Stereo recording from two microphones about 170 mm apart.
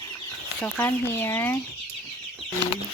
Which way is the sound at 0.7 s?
15° left (ahead or behind).